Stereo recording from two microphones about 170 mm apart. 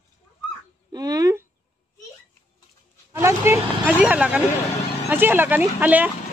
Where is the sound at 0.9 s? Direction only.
20° right (ahead or behind).